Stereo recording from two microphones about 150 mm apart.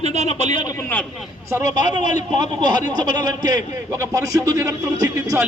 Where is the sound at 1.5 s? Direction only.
25° right (ahead or behind).